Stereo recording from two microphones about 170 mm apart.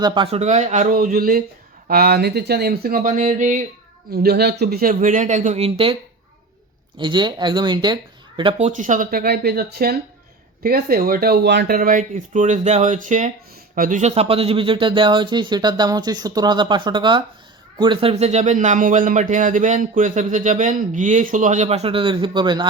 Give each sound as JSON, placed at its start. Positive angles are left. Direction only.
{"t": 0.0, "sound": "speech", "side_deg": -30}
{"t": 4.1, "sound": "a man's voice", "side_deg": -65}